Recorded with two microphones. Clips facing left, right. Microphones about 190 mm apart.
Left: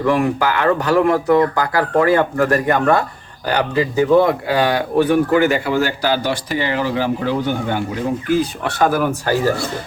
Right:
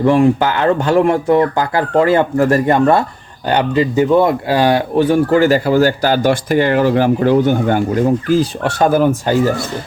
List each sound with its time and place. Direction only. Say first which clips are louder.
0.0 s speech: right 5 dB; 25° right (ahead or behind); by 7.8 s 50° right (ahead or behind)
8.3 s speech: right 3 dB; 30° right (ahead or behind)